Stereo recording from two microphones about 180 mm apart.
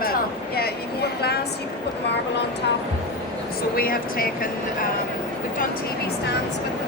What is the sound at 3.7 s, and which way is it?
Speech, 55° left (ahead or behind).